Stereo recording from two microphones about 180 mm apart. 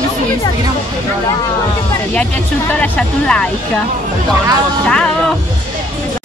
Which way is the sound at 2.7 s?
5° left (ahead or behind).